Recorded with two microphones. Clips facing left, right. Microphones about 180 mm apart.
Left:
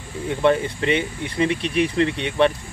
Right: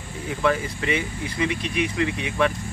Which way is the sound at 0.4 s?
30° left (ahead or behind).